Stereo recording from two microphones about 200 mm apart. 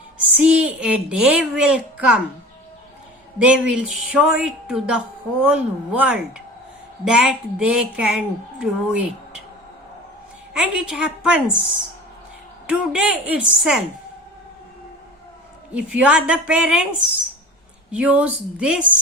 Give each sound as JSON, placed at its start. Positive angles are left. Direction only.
{"t": 0.3, "sound": "a woman's voice", "side_deg": -5}
{"t": 3.3, "sound": "a woman's voice", "side_deg": -5}
{"t": 10.5, "sound": "a woman's voice", "side_deg": -5}
{"t": 12.6, "sound": "a woman's voice", "side_deg": -5}
{"t": 15.7, "sound": "a woman's voice", "side_deg": -5}
{"t": 17.9, "sound": "a woman's voice", "side_deg": -5}